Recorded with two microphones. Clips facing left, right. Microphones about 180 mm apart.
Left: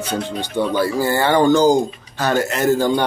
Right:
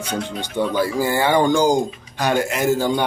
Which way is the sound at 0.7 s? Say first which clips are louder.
Left 2 dB; 10° right (ahead or behind).